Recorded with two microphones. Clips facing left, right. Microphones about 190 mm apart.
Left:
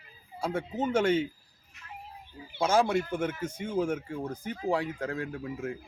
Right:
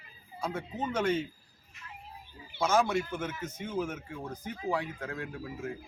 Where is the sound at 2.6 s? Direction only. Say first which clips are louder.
Left 2 dB; 30° left (ahead or behind).